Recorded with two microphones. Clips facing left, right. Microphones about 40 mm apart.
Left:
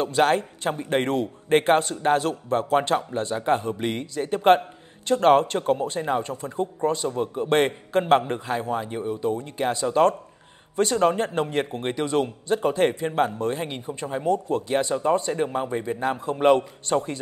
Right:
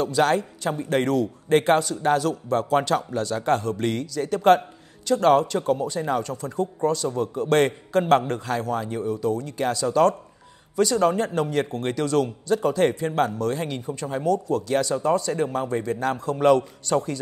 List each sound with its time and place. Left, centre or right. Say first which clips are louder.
0.0 s a man's voice: even; left